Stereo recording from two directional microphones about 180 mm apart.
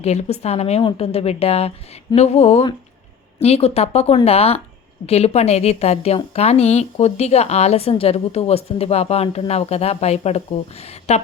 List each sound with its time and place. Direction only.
0.0 s a woman's voice: 35° left (ahead or behind)